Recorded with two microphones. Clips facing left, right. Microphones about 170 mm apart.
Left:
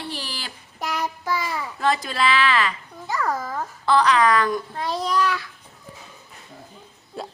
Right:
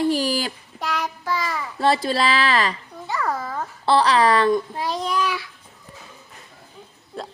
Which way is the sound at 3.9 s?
30° right (ahead or behind).